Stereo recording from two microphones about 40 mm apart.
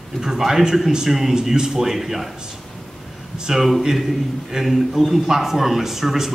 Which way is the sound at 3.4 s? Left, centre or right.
Centre.